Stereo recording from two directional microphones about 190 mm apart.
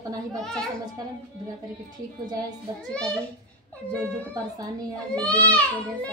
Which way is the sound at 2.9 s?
5° left (ahead or behind).